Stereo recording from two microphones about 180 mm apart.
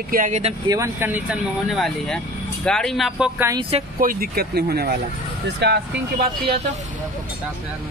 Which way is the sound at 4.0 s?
55° right (ahead or behind).